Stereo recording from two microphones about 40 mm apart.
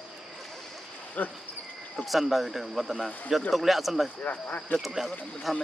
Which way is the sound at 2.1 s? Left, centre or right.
Centre.